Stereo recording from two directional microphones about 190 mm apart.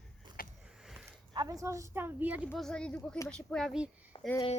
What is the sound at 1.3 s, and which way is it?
A woman's voice, 15° right (ahead or behind).